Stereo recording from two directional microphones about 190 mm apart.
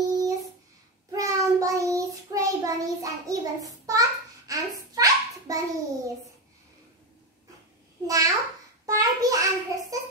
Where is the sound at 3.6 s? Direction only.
20° right (ahead or behind).